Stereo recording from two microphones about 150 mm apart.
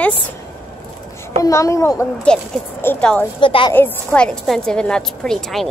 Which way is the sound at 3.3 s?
35° left (ahead or behind).